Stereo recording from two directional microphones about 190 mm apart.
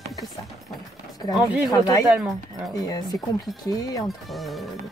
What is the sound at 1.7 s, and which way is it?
Speech, 20° left (ahead or behind).